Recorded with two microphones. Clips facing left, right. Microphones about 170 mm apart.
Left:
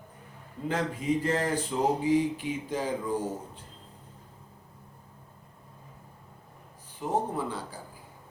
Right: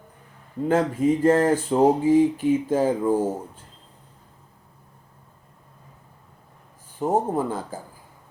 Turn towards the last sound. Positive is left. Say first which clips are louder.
# right 7 dB
turn(degrees=-45)  # may be behind; listen again after turning